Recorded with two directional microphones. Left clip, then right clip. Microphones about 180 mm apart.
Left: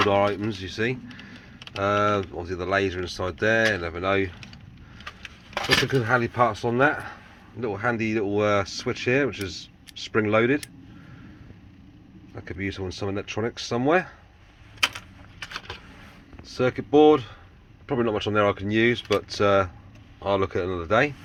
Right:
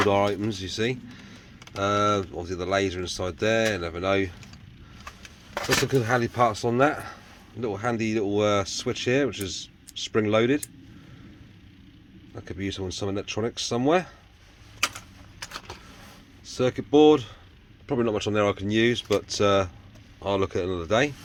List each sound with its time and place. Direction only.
0.0 s speech: 25° right (ahead or behind)
5.6 s chopping: 15° right (ahead or behind)
7.6 s speech: 15° right (ahead or behind)
12.3 s speech: 15° right (ahead or behind)
16.5 s speech: 15° right (ahead or behind)